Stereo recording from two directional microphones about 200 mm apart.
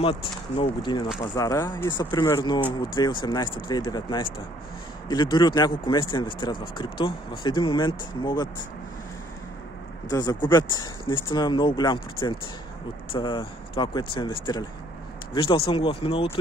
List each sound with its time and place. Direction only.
0.0 s speech: 25° left (ahead or behind)
10.0 s speech: 20° left (ahead or behind)